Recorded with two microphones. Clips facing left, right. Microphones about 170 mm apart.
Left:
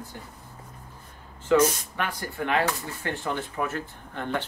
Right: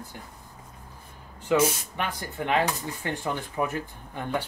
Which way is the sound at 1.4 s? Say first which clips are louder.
Left 2 dB; 15° right (ahead or behind).